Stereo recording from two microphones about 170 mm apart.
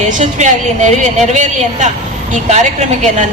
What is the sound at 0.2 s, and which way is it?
A woman's voice, 45° right (ahead or behind).